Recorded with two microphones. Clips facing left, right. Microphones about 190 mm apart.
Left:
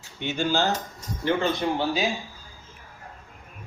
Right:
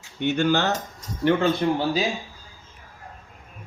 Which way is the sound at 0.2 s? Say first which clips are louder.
Right 4 dB; 60° right (ahead or behind).